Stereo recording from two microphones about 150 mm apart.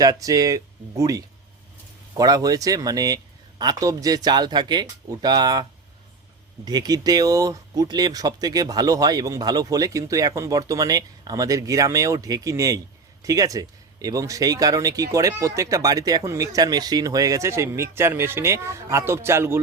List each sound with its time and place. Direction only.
0.0 s speech: 25° right (ahead or behind)
6.7 s speech: 25° right (ahead or behind)